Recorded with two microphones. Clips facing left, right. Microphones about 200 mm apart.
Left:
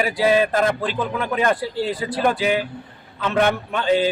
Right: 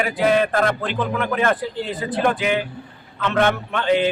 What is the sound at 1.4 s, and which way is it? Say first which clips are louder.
A man's voice: left 1 dB; 10° left (ahead or behind).